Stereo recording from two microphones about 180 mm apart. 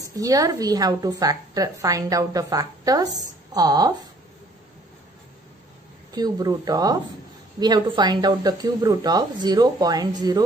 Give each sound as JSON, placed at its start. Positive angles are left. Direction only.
{"t": 0.0, "sound": "a woman's voice", "side_deg": -20}
{"t": 6.1, "sound": "a woman's voice", "side_deg": -20}